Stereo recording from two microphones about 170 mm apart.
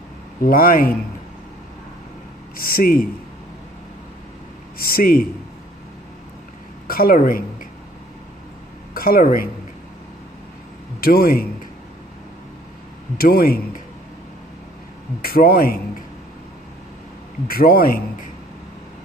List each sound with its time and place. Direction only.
0.4 s speech: 60° left (ahead or behind)
2.5 s speech: 60° left (ahead or behind)
4.7 s speech: 60° left (ahead or behind)
6.9 s speech: 60° left (ahead or behind)
8.9 s speech: 60° left (ahead or behind)
11.0 s speech: 60° left (ahead or behind)
13.2 s speech: 60° left (ahead or behind)
15.2 s speech: 60° left (ahead or behind)
17.5 s speech: 60° left (ahead or behind)